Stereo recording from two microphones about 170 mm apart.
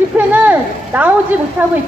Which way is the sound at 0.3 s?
10° right (ahead or behind).